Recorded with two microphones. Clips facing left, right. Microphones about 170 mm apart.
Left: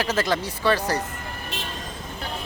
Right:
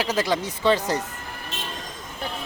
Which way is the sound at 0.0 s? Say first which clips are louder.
Even; 15° right (ahead or behind).